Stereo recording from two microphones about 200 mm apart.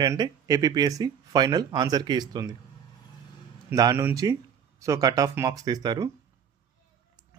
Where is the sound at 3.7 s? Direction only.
15° right (ahead or behind).